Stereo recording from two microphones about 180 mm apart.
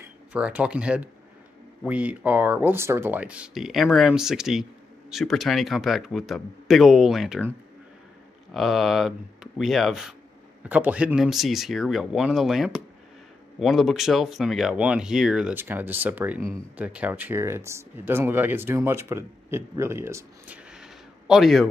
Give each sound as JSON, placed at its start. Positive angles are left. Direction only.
{"t": 0.0, "sound": "speech", "side_deg": -10}
{"t": 8.5, "sound": "speech", "side_deg": 0}